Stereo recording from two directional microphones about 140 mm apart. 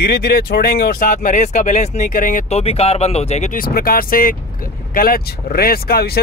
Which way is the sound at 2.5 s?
45° left (ahead or behind).